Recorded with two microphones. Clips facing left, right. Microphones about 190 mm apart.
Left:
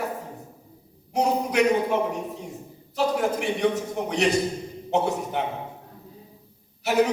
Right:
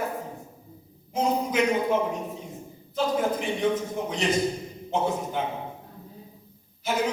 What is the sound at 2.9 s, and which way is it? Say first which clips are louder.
A man's voice: left 1 dB; 70° left (ahead or behind).